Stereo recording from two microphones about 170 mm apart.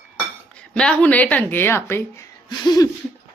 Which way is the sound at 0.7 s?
5° left (ahead or behind).